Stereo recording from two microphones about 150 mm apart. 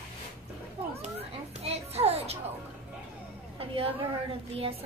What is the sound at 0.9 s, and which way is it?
Children playing, 45° right (ahead or behind).